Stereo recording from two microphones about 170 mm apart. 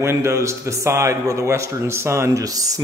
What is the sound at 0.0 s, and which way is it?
A man's voice, 15° right (ahead or behind).